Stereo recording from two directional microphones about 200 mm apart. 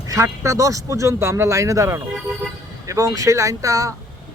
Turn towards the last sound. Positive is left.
turn(degrees=-15)  # may be behind; listen again after turning